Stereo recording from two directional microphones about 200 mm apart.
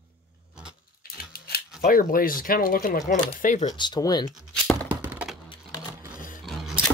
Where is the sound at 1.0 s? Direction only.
50° left (ahead or behind).